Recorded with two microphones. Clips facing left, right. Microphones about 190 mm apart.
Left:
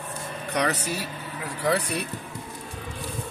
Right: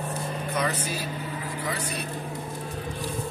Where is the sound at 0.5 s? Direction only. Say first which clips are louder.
Left 4 dB; 75° left (ahead or behind).